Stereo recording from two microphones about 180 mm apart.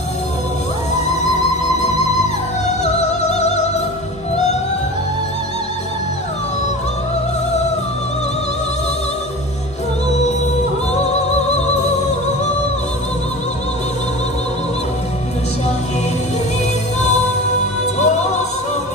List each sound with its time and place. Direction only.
2.8 s music: 40° left (ahead or behind)
17.9 s music: 40° left (ahead or behind)